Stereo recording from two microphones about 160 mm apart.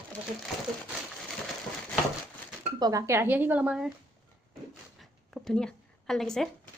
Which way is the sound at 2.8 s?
20° right (ahead or behind).